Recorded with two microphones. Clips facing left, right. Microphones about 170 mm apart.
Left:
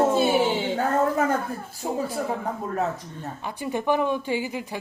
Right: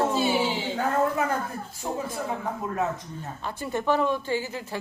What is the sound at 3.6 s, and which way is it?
A woman's voice, 15° left (ahead or behind).